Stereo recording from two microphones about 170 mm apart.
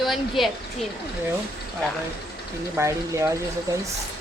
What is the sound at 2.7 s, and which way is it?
Speech, 15° right (ahead or behind).